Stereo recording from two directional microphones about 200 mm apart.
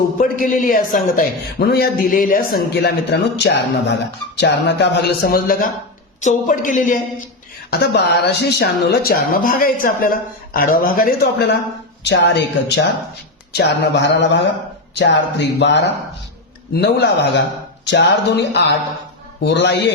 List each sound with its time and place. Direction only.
0.2 s a man's voice: 40° left (ahead or behind)
7.7 s speech: 55° left (ahead or behind)
12.0 s speech: 60° left (ahead or behind)